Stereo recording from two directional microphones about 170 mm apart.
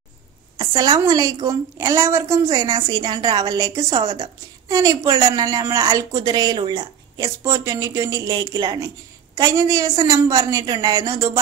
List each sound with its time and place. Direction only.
0.6 s a woman's voice: 25° right (ahead or behind)